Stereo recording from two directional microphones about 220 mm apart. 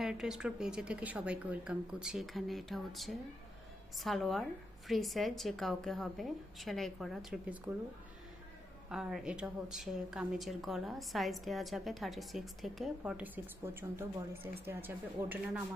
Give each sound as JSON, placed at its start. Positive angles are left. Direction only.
{"t": 0.0, "sound": "a woman's voice", "side_deg": 0}
{"t": 8.9, "sound": "a woman's voice", "side_deg": 0}